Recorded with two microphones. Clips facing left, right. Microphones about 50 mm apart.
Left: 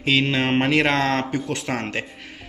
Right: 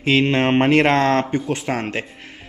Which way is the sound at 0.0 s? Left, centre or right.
Right.